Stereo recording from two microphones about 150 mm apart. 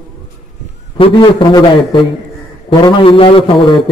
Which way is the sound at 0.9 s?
35° left (ahead or behind).